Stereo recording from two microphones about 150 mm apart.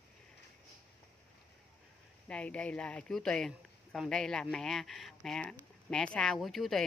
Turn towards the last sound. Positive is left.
turn(degrees=0)  # may be behind; listen again after turning